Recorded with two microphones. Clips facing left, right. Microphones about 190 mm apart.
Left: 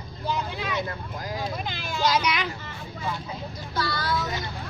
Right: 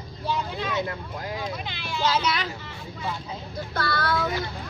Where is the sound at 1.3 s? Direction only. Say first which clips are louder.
Left 1 dB; 45° left (ahead or behind).